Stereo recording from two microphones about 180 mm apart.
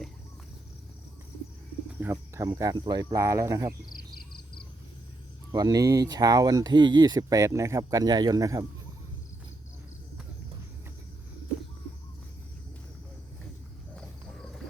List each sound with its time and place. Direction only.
2.0 s cricket: 15° right (ahead or behind)
2.5 s speech: 20° right (ahead or behind)
5.5 s speech: 20° right (ahead or behind)